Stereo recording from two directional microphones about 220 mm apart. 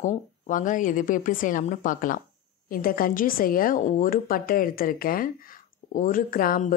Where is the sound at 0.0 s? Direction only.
35° left (ahead or behind).